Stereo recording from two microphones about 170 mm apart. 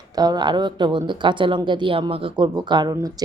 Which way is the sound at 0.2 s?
25° right (ahead or behind).